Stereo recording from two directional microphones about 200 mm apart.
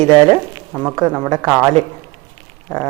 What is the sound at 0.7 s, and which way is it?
Speech, 10° right (ahead or behind).